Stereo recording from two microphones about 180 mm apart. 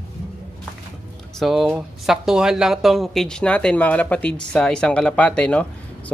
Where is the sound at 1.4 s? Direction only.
Centre (ahead or behind).